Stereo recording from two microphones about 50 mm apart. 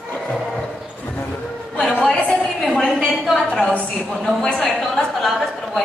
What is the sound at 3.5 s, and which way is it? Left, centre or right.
A woman's voice, centre.